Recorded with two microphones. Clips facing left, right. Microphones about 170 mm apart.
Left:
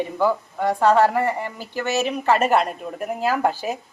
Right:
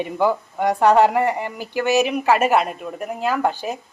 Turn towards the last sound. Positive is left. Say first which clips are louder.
# even
turn(degrees=5)  # may be behind; listen again after turning